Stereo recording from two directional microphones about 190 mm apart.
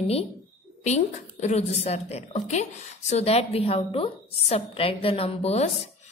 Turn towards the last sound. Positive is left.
turn(degrees=30)  # may be behind; listen again after turning